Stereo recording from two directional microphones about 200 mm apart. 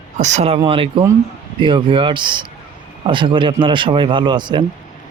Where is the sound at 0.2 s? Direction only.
35° right (ahead or behind).